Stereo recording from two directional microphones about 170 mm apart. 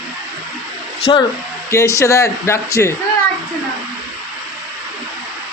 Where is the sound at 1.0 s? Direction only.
30° left (ahead or behind).